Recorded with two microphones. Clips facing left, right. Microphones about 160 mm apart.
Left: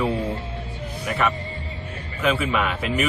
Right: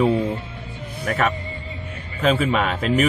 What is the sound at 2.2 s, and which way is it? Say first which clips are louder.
Speech: right 3 dB; 35° right (ahead or behind).